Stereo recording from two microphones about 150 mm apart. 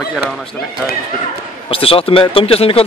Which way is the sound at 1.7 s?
40° left (ahead or behind).